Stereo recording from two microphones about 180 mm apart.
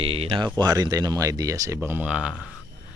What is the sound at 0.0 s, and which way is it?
Speech, 30° right (ahead or behind).